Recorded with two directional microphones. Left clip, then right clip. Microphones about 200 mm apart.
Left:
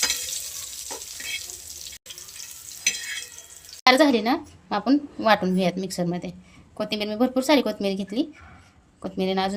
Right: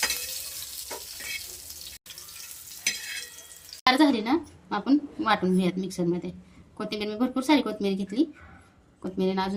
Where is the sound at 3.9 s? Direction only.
40° left (ahead or behind).